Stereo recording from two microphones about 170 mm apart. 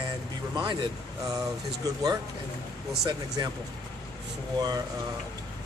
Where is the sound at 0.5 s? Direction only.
25° right (ahead or behind).